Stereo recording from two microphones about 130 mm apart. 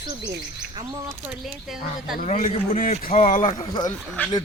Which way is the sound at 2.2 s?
70° left (ahead or behind).